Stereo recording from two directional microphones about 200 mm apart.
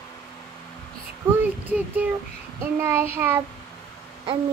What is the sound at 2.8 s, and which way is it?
Speech, 10° right (ahead or behind).